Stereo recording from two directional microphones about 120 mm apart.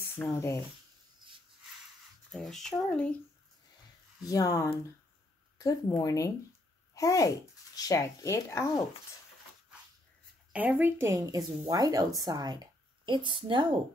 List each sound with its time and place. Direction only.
0.2 s speech: 10° left (ahead or behind)
2.3 s speech: centre (ahead or behind)
4.2 s speech: 30° left (ahead or behind)
10.5 s speech: 15° right (ahead or behind); by 13.7 s 40° right (ahead or behind)